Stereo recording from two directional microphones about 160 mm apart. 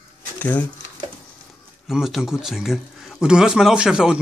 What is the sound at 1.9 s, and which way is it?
Speech, centre (ahead or behind).